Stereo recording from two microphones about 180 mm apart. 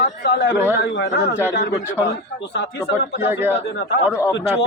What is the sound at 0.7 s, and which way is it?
Speech, 80° left.